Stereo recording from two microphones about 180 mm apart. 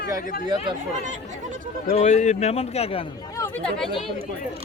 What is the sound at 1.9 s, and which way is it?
A man's voice, 40° left (ahead or behind).